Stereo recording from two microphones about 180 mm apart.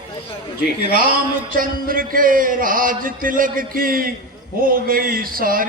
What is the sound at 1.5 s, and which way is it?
A man's voice, 50° right (ahead or behind).